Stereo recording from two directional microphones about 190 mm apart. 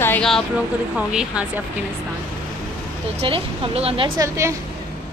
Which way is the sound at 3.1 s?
30° right (ahead or behind).